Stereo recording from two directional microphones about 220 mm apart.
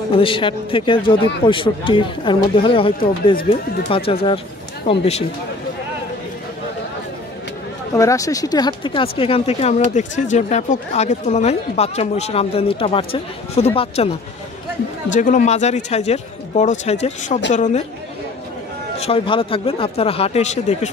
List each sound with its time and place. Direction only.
0.1 s speech: 25° left (ahead or behind)
7.9 s a man's voice: 15° left (ahead or behind); by 17.8 s 30° left (ahead or behind)
18.9 s speech: 25° left (ahead or behind)